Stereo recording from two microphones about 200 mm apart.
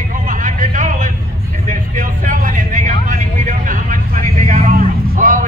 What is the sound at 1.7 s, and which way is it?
Vehicle, 40° right (ahead or behind).